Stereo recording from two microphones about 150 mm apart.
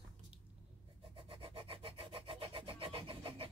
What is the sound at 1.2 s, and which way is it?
Sawing, 35° right (ahead or behind).